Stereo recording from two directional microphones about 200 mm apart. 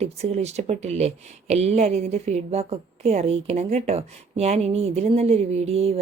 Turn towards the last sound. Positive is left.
turn(degrees=-30)  # may be behind; listen again after turning